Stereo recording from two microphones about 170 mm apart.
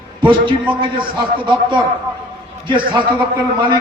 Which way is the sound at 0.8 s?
30° right (ahead or behind).